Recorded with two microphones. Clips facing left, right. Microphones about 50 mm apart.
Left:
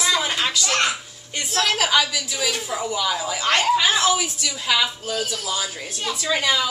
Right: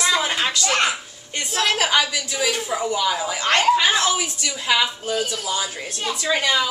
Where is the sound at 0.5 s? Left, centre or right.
Centre.